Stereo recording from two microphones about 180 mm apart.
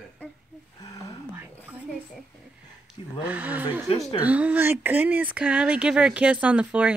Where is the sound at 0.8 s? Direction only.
20° left (ahead or behind).